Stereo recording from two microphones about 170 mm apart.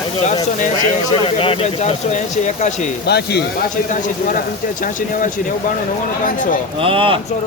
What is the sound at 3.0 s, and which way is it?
Speech, 75° left (ahead or behind).